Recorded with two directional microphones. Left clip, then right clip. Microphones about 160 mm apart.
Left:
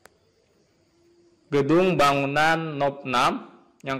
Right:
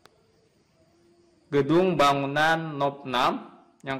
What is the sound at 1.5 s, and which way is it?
A man's voice, 20° left (ahead or behind).